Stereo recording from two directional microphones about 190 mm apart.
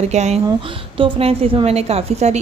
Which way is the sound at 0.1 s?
35° right (ahead or behind).